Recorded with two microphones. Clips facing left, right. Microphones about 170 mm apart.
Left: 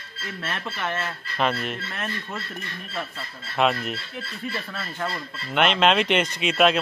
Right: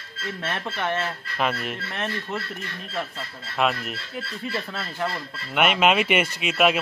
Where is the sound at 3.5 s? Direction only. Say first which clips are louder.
Left 2 dB; centre (ahead or behind).